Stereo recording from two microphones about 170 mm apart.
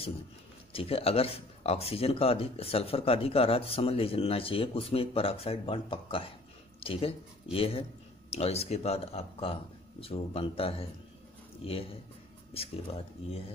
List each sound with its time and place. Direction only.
0.7 s speech: 35° left (ahead or behind)